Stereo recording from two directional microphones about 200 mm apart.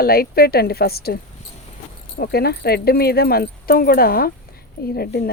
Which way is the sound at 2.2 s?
50° left (ahead or behind).